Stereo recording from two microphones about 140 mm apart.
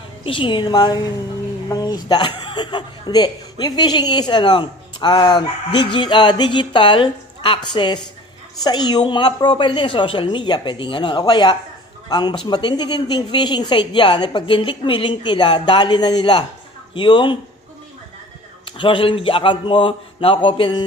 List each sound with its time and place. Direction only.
0.2 s speech: 40° left (ahead or behind)
18.7 s speech: 35° left (ahead or behind)